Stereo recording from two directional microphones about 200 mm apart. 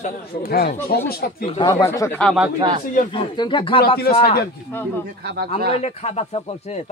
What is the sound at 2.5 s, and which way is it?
Speech, 20° right (ahead or behind).